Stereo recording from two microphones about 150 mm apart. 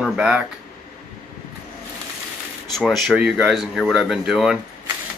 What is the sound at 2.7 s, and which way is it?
Speech, centre (ahead or behind).